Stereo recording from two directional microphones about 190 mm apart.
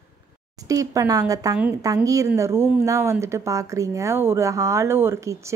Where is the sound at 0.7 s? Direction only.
15° right (ahead or behind).